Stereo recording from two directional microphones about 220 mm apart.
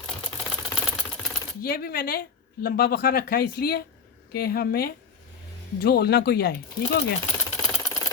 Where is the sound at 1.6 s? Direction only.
45° left (ahead or behind).